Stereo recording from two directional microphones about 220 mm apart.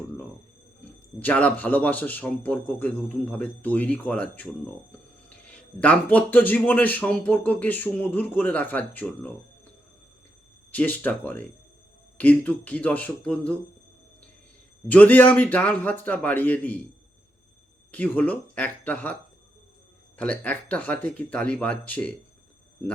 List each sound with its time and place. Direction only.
1.2 s speech: 5° left (ahead or behind)
10.7 s speech: 5° left (ahead or behind)
14.8 s speech: 10° left (ahead or behind)
17.9 s speech: 5° left (ahead or behind)
20.1 s speech: 5° left (ahead or behind)